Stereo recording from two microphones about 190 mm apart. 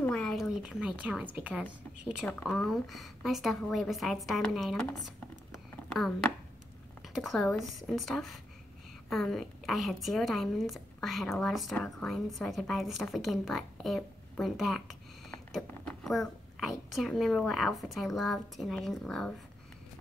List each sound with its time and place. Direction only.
0.0 s a woman's voice: 5° left (ahead or behind)